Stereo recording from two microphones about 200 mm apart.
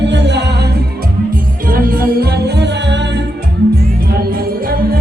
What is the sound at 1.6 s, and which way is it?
Music, 45° right (ahead or behind).